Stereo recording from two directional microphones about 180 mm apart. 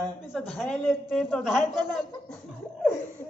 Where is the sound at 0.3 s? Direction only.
Centre (ahead or behind).